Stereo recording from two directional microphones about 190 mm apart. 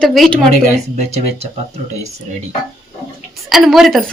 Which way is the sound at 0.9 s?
35° right (ahead or behind).